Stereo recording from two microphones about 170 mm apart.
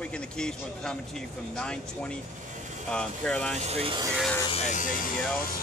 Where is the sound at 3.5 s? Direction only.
40° right (ahead or behind).